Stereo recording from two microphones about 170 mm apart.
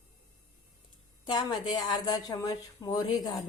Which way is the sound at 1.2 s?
25° left (ahead or behind).